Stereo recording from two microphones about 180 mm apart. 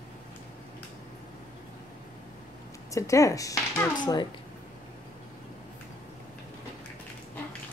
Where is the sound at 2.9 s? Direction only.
15° left (ahead or behind).